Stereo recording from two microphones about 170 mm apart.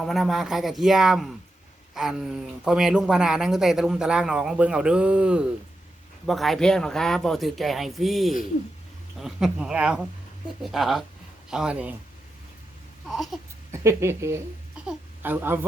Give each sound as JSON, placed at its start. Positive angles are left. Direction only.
{"t": 0.0, "sound": "speech", "side_deg": 0}
{"t": 13.7, "sound": "speech", "side_deg": -15}